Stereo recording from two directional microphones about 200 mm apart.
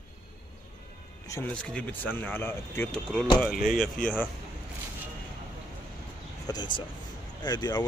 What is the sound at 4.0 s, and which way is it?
Speech, 40° left (ahead or behind).